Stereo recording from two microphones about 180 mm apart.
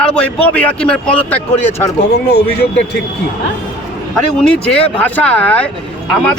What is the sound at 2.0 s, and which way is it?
A man's voice, 65° left (ahead or behind).